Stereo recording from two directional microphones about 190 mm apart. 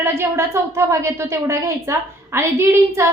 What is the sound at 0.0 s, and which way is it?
A woman's voice, 15° right (ahead or behind).